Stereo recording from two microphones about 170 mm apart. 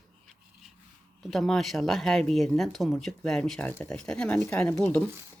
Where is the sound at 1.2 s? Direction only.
Centre (ahead or behind).